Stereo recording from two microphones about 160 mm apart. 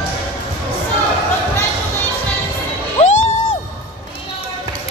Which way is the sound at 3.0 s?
45° left (ahead or behind).